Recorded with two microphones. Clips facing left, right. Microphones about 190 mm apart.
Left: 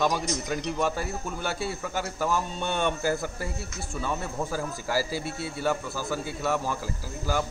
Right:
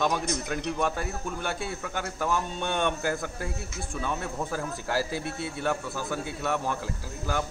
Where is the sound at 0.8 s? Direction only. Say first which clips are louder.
Left 1 dB; 5° left (ahead or behind).